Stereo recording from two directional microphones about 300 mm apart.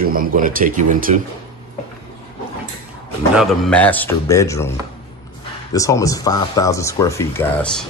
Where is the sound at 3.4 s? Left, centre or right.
Centre.